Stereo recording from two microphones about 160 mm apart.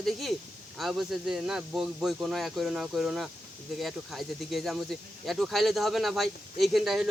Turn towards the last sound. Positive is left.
turn(degrees=0)  # may be behind; listen again after turning